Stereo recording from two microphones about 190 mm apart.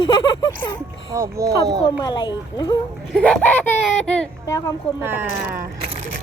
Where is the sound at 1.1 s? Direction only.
15° right (ahead or behind).